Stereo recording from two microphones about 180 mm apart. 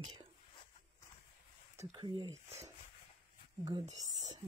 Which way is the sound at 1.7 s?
25° right (ahead or behind).